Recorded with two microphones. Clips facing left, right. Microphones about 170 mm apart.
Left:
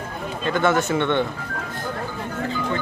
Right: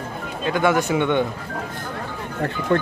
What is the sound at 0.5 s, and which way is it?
Speech, 10° right (ahead or behind).